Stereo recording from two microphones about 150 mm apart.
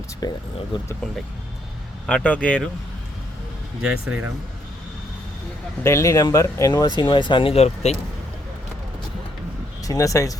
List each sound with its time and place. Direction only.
0.2 s speech: 25° left (ahead or behind)
2.0 s speech: 10° left (ahead or behind)
3.8 s speech: 5° right (ahead or behind)
5.8 s speech: 20° left (ahead or behind); by 7.9 s 45° left (ahead or behind)
9.8 s speech: 20° left (ahead or behind)